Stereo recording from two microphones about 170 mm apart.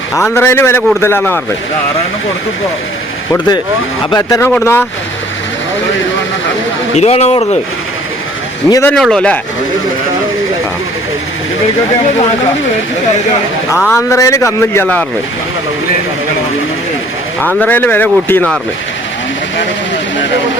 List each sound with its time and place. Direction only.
0.2 s a man's voice: 15° left (ahead or behind)
4.1 s a man's voice: 20° left (ahead or behind)
6.9 s speech: 40° left (ahead or behind)
8.7 s a man's voice: 10° left (ahead or behind)
13.9 s a man's voice: 15° left (ahead or behind)
17.6 s a man's voice: 10° left (ahead or behind)